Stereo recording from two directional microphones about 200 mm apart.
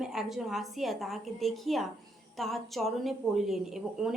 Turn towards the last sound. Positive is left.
turn(degrees=0)  # may be behind; listen again after turning